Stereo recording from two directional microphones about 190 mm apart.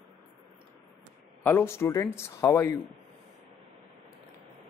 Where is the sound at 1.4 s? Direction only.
10° left (ahead or behind).